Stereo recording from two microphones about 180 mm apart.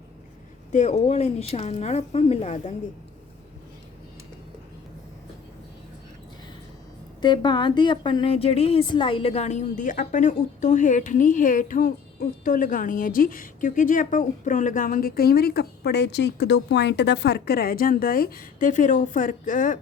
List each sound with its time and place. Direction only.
0.7 s speech: 40° left (ahead or behind)
7.2 s a woman's voice: 25° left (ahead or behind); by 19.8 s 45° left (ahead or behind)